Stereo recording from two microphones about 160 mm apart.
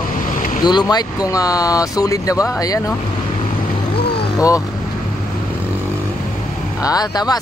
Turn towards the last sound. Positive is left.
turn(degrees=25)  # may be behind; listen again after turning